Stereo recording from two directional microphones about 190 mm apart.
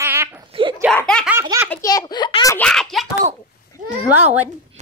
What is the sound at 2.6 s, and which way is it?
Speech, centre (ahead or behind).